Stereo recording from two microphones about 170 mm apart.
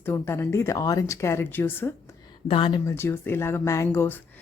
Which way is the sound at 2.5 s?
30° left (ahead or behind).